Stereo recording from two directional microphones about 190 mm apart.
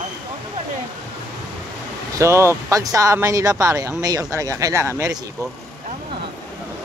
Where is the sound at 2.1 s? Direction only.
15° right (ahead or behind).